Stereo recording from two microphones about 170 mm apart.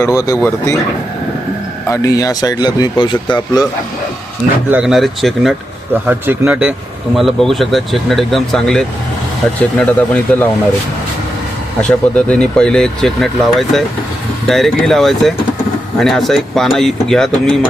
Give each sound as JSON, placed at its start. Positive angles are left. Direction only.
{"t": 0.0, "sound": "speech", "side_deg": 20}
{"t": 1.9, "sound": "speech", "side_deg": 20}
{"t": 4.7, "sound": "speech", "side_deg": -5}
{"t": 11.8, "sound": "speech", "side_deg": 5}